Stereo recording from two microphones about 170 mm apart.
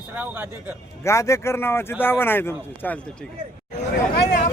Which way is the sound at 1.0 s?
15° left (ahead or behind).